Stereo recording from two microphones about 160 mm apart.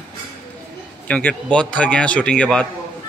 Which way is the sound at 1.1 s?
10° left (ahead or behind).